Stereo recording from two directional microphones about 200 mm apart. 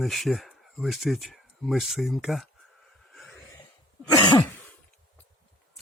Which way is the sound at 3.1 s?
5° left (ahead or behind).